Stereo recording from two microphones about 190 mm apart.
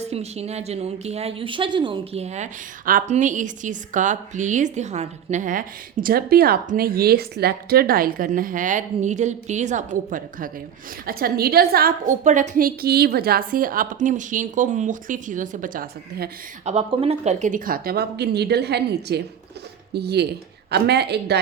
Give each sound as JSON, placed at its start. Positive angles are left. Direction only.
{"t": 0.1, "sound": "a woman's voice", "side_deg": -35}
{"t": 16.6, "sound": "speech", "side_deg": -30}